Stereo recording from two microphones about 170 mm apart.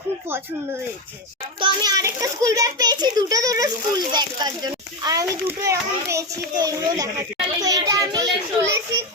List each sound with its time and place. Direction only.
1.5 s a child's voice: 25° right (ahead or behind)